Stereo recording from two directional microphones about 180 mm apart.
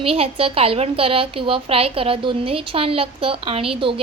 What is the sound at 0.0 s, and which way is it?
A woman's voice, 30° right (ahead or behind).